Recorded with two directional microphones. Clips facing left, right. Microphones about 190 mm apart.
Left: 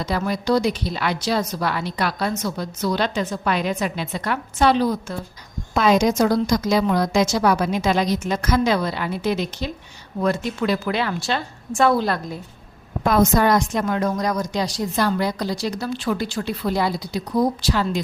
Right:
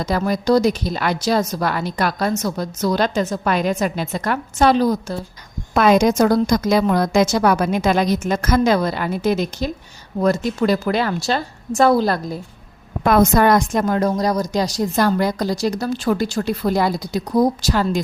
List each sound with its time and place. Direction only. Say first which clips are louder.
0.0 s a woman's voice: right 4 dB; 45° right (ahead or behind)
5.7 s a woman's voice: right 3 dB; 55° right (ahead or behind); by 12.4 s 35° right (ahead or behind)
13.1 s a woman's voice: right 3 dB; 60° right (ahead or behind)